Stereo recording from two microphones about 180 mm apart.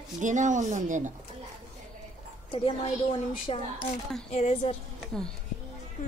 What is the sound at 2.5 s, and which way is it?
A child's voice, 30° left (ahead or behind).